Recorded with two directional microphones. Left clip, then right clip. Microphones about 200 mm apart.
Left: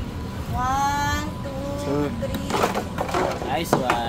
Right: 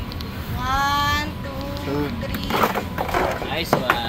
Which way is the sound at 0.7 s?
55° left (ahead or behind).